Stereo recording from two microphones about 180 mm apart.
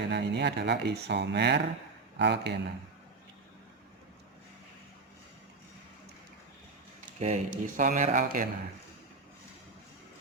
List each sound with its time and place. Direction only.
0.1 s speech: 70° right (ahead or behind)
7.0 s speech: 40° right (ahead or behind)